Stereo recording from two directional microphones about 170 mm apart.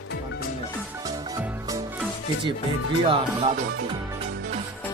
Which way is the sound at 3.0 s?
30° right (ahead or behind).